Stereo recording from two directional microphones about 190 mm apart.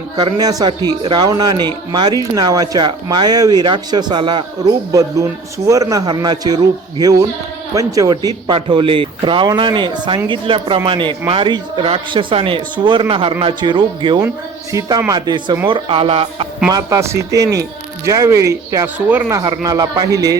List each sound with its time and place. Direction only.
0.2 s a man's voice: 20° right (ahead or behind)
16.6 s speech: 15° right (ahead or behind)